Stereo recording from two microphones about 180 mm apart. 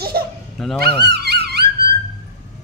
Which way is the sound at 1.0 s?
65° right (ahead or behind).